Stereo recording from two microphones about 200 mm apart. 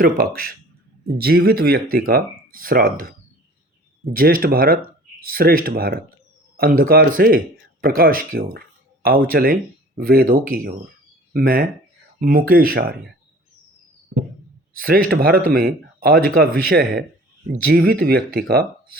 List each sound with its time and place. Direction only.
0.0 s speech: 45° right (ahead or behind)
14.8 s speech: 45° right (ahead or behind)